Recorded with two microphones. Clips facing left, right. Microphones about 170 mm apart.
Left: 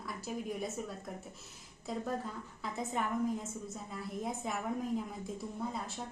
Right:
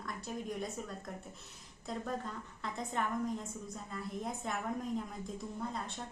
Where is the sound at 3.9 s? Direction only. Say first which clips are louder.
Left 1 dB; centre (ahead or behind).